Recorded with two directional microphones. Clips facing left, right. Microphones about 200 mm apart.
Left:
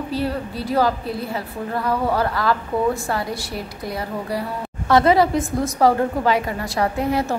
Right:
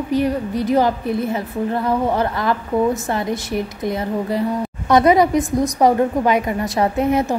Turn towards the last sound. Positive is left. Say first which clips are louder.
# right 4 dB
turn(degrees=-20)  # may be behind; listen again after turning